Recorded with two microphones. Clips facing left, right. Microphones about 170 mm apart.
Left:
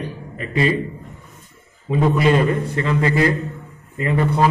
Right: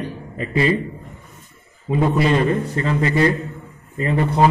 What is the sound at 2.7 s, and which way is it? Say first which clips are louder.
Speech: even; 35° right (ahead or behind).